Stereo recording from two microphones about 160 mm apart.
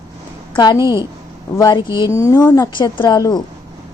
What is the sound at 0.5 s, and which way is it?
Speech, 25° left (ahead or behind).